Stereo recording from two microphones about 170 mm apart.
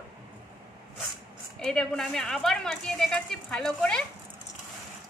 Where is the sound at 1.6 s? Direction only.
5° left (ahead or behind).